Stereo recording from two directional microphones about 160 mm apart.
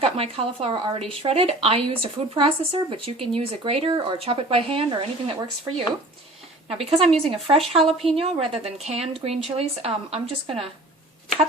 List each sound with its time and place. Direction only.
0.0 s speech: 35° right (ahead or behind)